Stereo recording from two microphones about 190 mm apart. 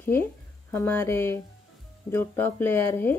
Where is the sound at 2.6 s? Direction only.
10° left (ahead or behind).